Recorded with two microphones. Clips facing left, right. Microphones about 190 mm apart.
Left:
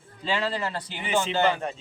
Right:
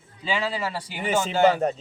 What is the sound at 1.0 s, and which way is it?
Speech, 40° right (ahead or behind).